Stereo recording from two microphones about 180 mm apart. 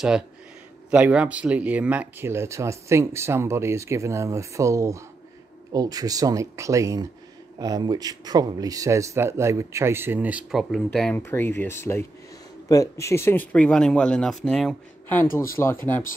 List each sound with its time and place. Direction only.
0.8 s speech: 5° right (ahead or behind); by 16.0 s 15° left (ahead or behind)